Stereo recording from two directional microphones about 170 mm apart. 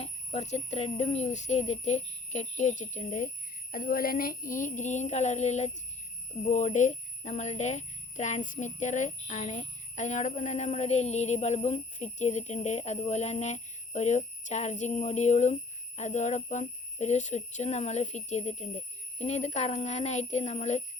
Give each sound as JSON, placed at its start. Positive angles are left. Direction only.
{"t": 0.0, "sound": "speech", "side_deg": 40}
{"t": 3.7, "sound": "speech", "side_deg": 55}